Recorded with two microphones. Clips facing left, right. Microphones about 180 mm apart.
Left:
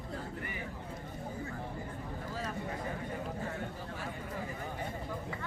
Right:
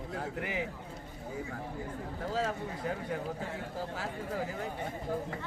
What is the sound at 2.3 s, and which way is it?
Speech, 85° right.